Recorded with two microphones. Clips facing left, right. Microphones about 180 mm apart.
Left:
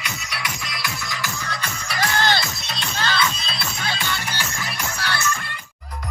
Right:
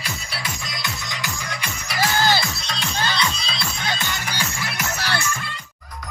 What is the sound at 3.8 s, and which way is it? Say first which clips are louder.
Music: left 1 dB; 15° right (ahead or behind).